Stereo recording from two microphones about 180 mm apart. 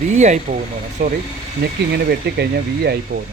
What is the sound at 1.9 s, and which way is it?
Speech, 65° right (ahead or behind).